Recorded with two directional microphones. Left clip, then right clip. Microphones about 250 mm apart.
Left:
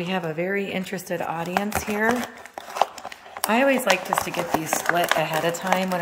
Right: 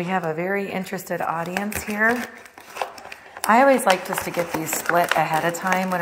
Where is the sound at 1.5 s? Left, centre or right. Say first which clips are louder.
Left 1 dB; centre.